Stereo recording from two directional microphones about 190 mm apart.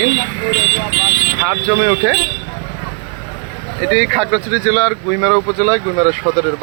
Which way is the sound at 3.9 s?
Centre (ahead or behind).